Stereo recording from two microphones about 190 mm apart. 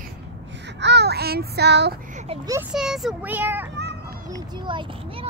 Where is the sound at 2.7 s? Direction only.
Centre (ahead or behind).